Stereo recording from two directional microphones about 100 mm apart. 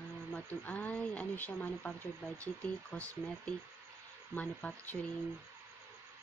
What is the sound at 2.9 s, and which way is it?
Speech, 15° left (ahead or behind).